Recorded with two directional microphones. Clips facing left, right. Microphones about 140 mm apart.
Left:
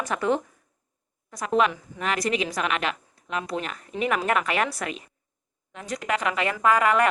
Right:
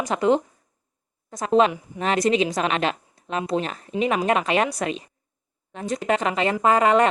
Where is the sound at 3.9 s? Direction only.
20° right (ahead or behind).